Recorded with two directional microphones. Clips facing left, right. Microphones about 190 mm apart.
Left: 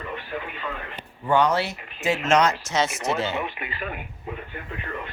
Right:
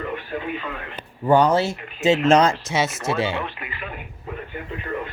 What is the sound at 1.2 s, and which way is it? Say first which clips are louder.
Speech: right 4 dB; 35° right (ahead or behind).